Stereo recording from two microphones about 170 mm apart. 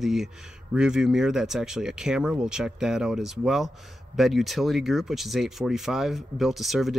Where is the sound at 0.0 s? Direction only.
Centre (ahead or behind).